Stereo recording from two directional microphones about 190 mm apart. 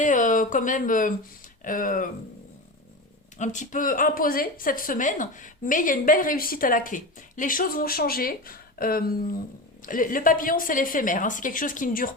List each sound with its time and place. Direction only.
0.0 s a woman's voice: 45° left (ahead or behind)
3.3 s a woman's voice: 40° left (ahead or behind)